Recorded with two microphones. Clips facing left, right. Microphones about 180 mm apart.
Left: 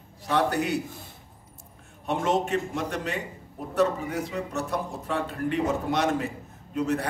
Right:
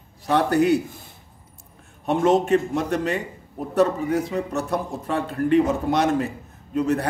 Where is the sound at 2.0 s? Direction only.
40° right (ahead or behind).